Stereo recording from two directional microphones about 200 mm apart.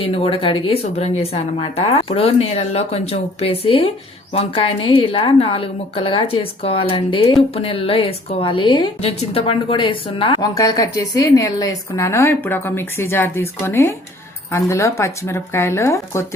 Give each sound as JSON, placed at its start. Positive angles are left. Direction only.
{"t": 0.0, "sound": "a woman's voice", "side_deg": 30}